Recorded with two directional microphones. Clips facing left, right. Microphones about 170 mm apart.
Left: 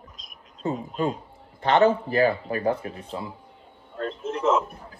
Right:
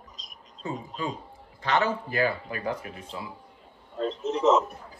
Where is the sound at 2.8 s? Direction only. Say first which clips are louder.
Left 5 dB; 35° left (ahead or behind).